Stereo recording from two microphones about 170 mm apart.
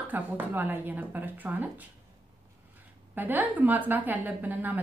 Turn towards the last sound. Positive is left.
turn(degrees=-10)  # may be behind; listen again after turning